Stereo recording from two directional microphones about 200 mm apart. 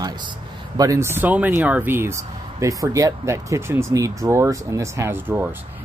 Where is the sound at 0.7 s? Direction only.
15° right (ahead or behind).